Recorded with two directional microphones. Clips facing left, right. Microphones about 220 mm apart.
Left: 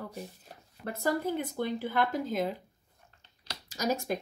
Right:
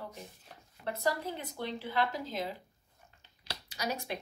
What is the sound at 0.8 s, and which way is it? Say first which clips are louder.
Speech: left 3 dB; 50° left (ahead or behind).